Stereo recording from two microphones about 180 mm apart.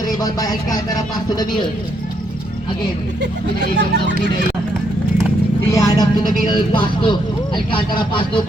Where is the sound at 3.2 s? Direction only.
70° right (ahead or behind).